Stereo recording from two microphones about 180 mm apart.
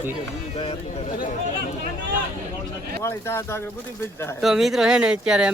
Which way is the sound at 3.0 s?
15° left (ahead or behind).